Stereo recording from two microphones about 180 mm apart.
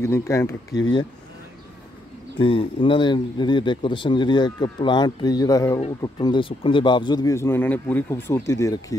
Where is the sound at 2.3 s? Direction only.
30° left (ahead or behind).